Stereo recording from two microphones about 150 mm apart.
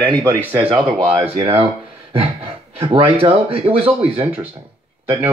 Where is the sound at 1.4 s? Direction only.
35° right (ahead or behind).